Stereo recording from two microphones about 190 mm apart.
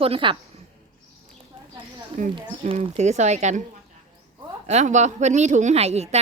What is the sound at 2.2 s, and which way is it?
A woman's voice, 40° right (ahead or behind).